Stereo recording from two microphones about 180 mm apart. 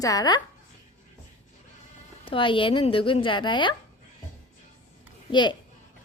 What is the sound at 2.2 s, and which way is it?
Speech, 30° left (ahead or behind).